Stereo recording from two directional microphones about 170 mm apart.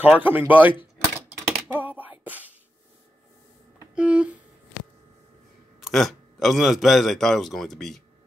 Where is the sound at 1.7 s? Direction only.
10° right (ahead or behind).